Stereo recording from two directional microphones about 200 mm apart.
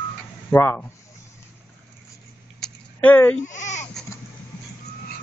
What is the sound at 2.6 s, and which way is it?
Bleat, 10° left (ahead or behind).